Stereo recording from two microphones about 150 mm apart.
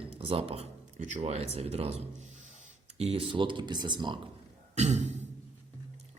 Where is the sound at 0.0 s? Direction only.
40° right (ahead or behind).